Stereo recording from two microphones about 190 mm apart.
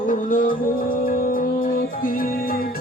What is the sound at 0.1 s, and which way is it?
Music, 45° left (ahead or behind).